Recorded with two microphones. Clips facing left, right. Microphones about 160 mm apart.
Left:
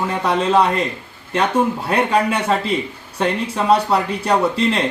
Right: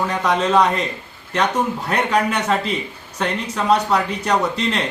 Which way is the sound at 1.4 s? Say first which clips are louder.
Left 2 dB; 30° left (ahead or behind).